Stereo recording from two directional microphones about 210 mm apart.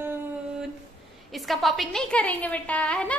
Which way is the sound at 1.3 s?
Centre (ahead or behind).